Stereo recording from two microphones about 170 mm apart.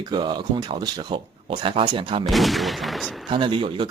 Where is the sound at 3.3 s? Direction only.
30° right (ahead or behind).